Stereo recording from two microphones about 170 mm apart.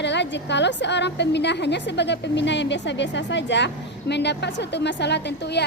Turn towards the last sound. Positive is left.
turn(degrees=85)